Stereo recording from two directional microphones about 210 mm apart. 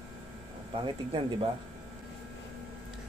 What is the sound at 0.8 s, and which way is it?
Speech, 25° right (ahead or behind).